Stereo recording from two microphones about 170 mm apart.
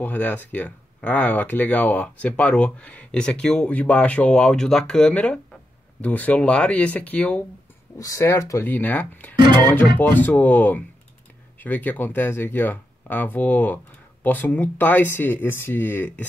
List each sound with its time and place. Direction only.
0.0 s speech: 10° left (ahead or behind)